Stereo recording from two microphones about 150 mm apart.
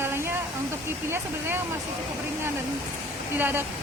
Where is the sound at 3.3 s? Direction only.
15° right (ahead or behind).